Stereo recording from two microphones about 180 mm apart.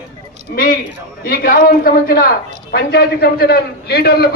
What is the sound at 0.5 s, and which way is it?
A man's voice, 55° left (ahead or behind).